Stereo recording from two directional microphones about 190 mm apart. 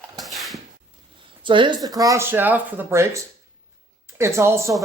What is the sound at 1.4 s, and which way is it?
Speech, 25° right (ahead or behind).